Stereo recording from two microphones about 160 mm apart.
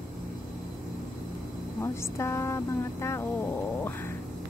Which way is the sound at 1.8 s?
15° left (ahead or behind).